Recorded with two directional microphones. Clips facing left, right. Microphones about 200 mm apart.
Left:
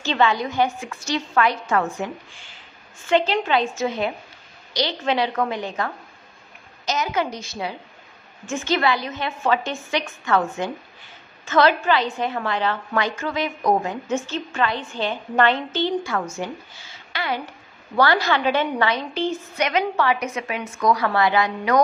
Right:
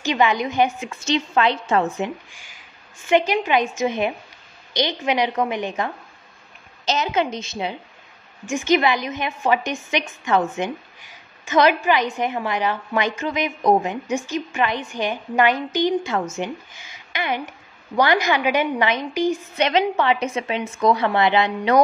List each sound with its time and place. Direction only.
0.0 s a woman's voice: 15° right (ahead or behind)
2.3 s a woman's voice: 10° right (ahead or behind)
6.9 s a woman's voice: 25° right (ahead or behind)
19.5 s a woman's voice: 25° right (ahead or behind)